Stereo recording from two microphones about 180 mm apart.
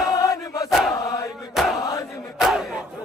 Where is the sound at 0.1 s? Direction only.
20° left (ahead or behind).